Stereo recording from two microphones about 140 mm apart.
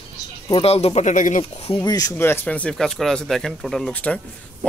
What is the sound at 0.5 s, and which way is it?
Speech, 45° left (ahead or behind).